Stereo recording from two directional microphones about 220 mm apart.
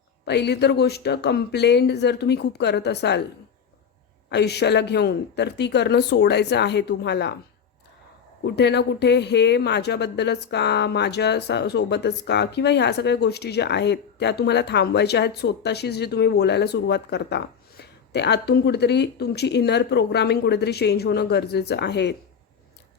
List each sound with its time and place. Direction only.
0.3 s a woman's voice: 50° left (ahead or behind)
4.3 s a woman's voice: 50° left (ahead or behind)
8.4 s a woman's voice: 50° left (ahead or behind)